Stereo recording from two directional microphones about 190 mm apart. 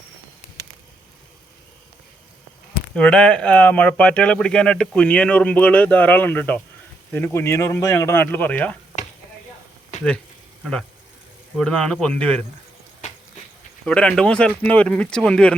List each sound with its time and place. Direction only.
2.9 s speech: 5° left (ahead or behind)
10.6 s speech: 5° left (ahead or behind)
13.8 s speech: 5° left (ahead or behind)